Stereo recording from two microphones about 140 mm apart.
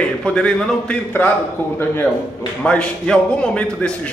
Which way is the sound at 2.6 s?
5° left (ahead or behind).